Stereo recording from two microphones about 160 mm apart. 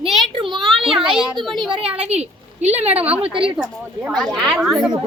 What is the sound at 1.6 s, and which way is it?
A woman's voice, 30° right (ahead or behind).